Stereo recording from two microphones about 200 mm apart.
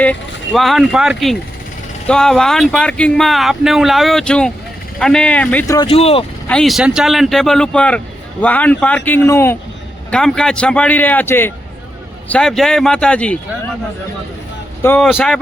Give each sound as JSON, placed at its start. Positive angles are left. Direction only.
{"t": 0.0, "sound": "speech", "side_deg": 5}
{"t": 5.7, "sound": "speech", "side_deg": 25}
{"t": 6.5, "sound": "speech", "side_deg": 0}
{"t": 14.8, "sound": "speech", "side_deg": 10}